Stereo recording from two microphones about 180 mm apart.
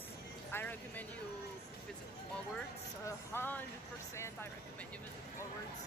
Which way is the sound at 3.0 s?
10° left (ahead or behind).